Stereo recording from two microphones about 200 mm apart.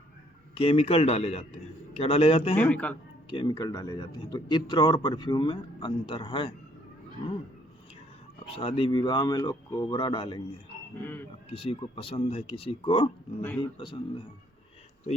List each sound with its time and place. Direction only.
0.5 s a man's voice: 30° left (ahead or behind)
2.6 s a man's voice: 5° left (ahead or behind)
3.2 s a man's voice: 20° left (ahead or behind)
8.4 s a man's voice: 30° left (ahead or behind)
10.9 s a man's voice: 10° left (ahead or behind)
11.5 s a man's voice: 25° left (ahead or behind)